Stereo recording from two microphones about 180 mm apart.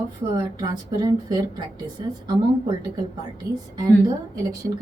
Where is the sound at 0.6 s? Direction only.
25° right (ahead or behind).